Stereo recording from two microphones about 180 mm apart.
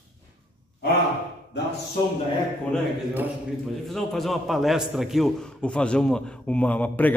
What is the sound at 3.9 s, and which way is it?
A man's voice, centre (ahead or behind).